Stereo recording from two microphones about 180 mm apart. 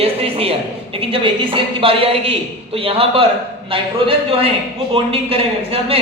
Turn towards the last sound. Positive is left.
turn(degrees=-30)  # may be behind; listen again after turning